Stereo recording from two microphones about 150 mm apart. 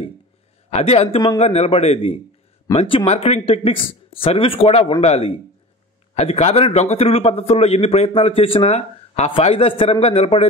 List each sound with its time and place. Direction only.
0.7 s speech: 45° left (ahead or behind)